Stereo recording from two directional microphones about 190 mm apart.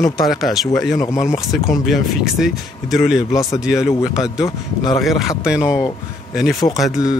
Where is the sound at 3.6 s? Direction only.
5° right (ahead or behind).